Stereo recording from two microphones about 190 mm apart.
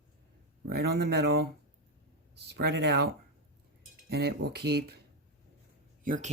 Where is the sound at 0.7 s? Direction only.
55° right (ahead or behind).